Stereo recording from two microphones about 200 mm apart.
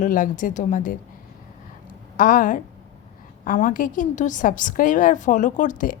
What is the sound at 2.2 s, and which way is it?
A woman's voice, 40° left (ahead or behind).